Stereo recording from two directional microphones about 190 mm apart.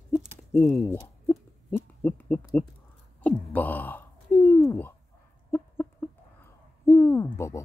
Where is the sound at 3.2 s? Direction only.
10° left (ahead or behind).